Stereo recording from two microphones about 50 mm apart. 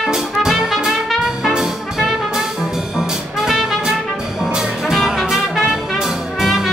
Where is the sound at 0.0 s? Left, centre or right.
Centre.